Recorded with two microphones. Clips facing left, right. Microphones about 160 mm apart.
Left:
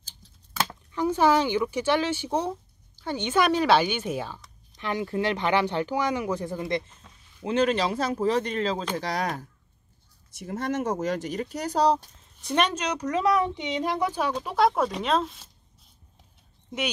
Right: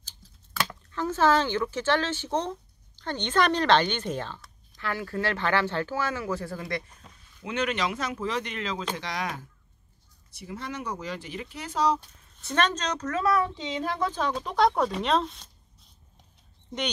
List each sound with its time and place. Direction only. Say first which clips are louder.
0.5 s a woman's voice: left 2 dB; 15° left (ahead or behind)
7.4 s speech: left 5 dB; 35° left (ahead or behind)
10.3 s speech: left 7 dB; 50° left (ahead or behind)
12.2 s a woman's voice: left 2 dB; 15° left (ahead or behind)